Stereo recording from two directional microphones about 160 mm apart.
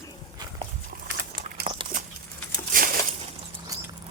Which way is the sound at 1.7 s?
50° right (ahead or behind).